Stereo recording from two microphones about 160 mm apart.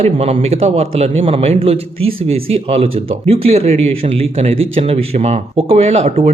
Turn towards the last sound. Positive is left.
turn(degrees=-45)  # may be behind; listen again after turning